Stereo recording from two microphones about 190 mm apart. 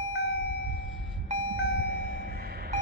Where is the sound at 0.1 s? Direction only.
60° left (ahead or behind).